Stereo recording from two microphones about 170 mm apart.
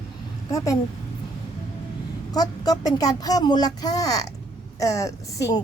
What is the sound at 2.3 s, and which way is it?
Speech, 20° left (ahead or behind).